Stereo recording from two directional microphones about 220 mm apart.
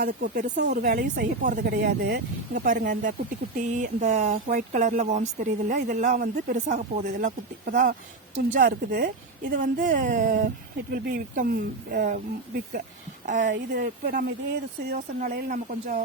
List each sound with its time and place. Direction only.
0.0 s a woman's voice: 45° right (ahead or behind)
9.6 s speech: 35° right (ahead or behind)
13.4 s a woman's voice: 50° right (ahead or behind)